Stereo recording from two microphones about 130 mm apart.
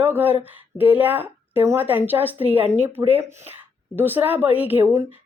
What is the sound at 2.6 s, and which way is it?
Speech, 55° right (ahead or behind).